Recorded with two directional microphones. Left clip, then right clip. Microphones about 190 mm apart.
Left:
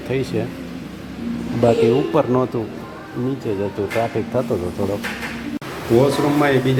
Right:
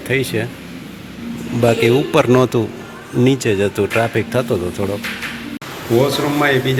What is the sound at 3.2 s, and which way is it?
Speech, 15° right (ahead or behind).